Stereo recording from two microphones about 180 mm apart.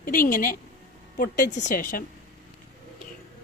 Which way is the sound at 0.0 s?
50° left (ahead or behind).